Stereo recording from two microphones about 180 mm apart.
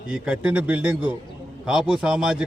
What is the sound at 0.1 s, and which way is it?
A man's voice, 5° right (ahead or behind).